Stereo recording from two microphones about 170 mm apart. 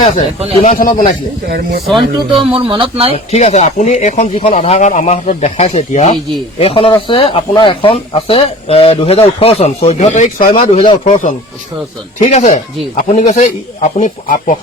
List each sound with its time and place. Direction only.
0.6 s speech: 50° left (ahead or behind)
1.5 s speech: 65° right (ahead or behind)
2.0 s speech: 30° right (ahead or behind)
3.3 s speech: 40° left (ahead or behind)
10.6 s speech: 35° left (ahead or behind); by 14.6 s 50° left (ahead or behind)